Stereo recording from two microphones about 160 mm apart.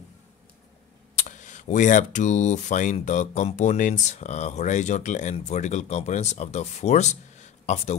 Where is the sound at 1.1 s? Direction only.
50° left (ahead or behind).